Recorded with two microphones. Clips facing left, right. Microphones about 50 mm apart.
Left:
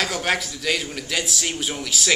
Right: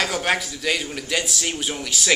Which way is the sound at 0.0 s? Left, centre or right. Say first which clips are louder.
Right 1 dB; centre.